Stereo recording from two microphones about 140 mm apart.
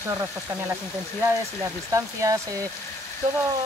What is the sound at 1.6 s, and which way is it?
Speech, 20° right (ahead or behind).